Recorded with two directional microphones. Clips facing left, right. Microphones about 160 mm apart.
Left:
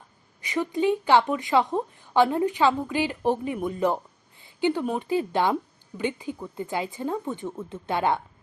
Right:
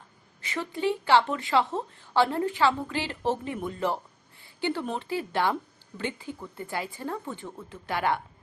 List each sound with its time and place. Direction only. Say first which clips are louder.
0.4 s a woman's voice: left 5 dB; 15° left (ahead or behind)